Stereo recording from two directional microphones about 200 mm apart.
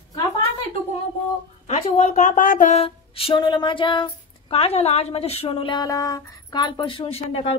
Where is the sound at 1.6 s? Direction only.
35° left (ahead or behind).